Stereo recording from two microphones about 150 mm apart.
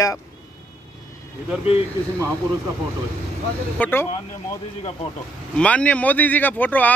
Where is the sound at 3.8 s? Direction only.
15° left (ahead or behind).